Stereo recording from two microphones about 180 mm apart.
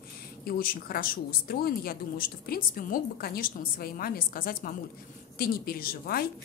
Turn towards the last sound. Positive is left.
turn(degrees=55)  # may be behind; listen again after turning